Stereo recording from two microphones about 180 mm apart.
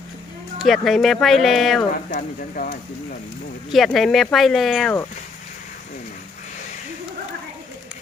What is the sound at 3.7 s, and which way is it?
Speech, centre (ahead or behind).